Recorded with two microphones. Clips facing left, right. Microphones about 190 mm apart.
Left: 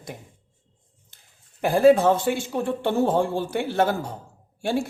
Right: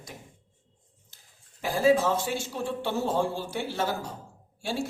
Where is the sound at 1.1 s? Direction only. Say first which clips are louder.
Left 1 dB; 55° left (ahead or behind).